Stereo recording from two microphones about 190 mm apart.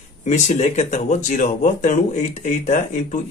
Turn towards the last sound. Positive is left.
turn(degrees=40)  # may be behind; listen again after turning